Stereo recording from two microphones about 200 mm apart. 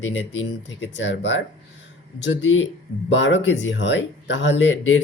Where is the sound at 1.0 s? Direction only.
65° left (ahead or behind).